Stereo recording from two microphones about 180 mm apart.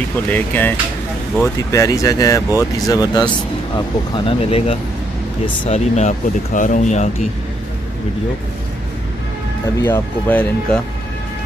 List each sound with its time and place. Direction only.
0.3 s speech: 10° left (ahead or behind); by 7.2 s 40° left (ahead or behind)
9.8 s speech: 10° left (ahead or behind)